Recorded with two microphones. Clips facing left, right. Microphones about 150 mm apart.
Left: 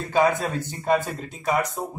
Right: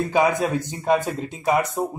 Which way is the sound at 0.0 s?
15° right (ahead or behind).